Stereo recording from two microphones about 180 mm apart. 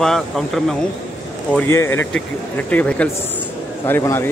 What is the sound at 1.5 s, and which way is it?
Speech, 15° left (ahead or behind).